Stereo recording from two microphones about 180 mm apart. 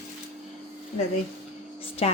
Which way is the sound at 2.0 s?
35° left (ahead or behind).